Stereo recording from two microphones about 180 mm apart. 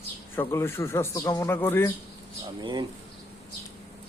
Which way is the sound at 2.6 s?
25° right (ahead or behind).